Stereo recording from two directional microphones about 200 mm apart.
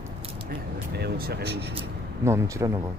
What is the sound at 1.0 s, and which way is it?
Speech, 50° right (ahead or behind).